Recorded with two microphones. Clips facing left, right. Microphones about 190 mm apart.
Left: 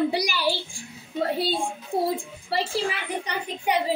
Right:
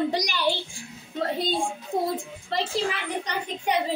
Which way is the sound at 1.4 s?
10° left (ahead or behind).